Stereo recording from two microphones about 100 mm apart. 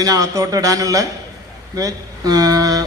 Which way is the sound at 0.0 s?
35° right (ahead or behind).